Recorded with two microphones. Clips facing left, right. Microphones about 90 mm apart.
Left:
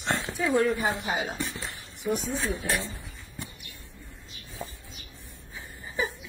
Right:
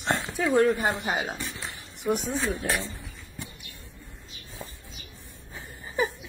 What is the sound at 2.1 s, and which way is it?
Speech, 70° right (ahead or behind).